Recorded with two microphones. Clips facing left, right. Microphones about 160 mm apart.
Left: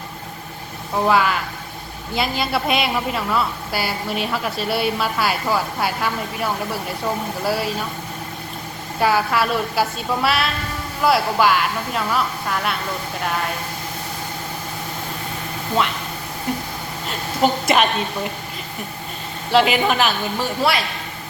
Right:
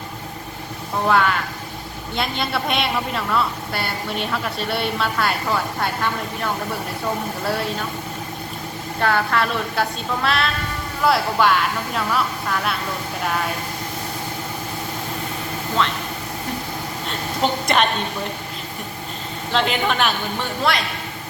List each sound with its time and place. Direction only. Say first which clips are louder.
1.0 s a woman's voice: even; centre (ahead or behind)
9.0 s a woman's voice: left 2 dB; 5° left (ahead or behind)
17.1 s a woman's voice: left 3 dB; 5° left (ahead or behind)
19.5 s a woman's voice: left 4 dB; 10° left (ahead or behind)